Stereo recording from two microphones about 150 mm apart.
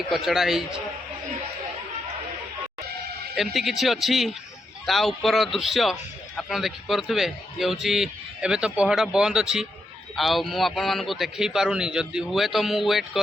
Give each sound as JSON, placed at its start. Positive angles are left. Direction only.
{"t": 0.1, "sound": "a man's voice", "side_deg": 0}
{"t": 3.3, "sound": "a man's voice", "side_deg": 0}